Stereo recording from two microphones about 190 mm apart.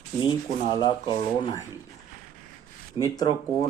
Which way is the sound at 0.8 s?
25° left (ahead or behind).